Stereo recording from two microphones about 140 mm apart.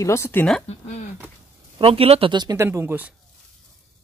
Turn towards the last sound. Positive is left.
turn(degrees=-15)  # may be behind; listen again after turning